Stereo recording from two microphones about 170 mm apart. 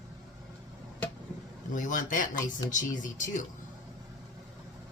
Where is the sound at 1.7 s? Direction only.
50° left (ahead or behind).